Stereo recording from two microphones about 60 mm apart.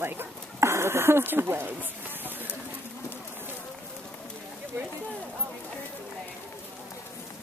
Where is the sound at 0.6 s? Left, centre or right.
Right.